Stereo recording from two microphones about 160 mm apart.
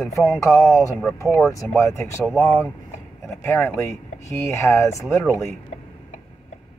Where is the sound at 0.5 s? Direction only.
Centre (ahead or behind).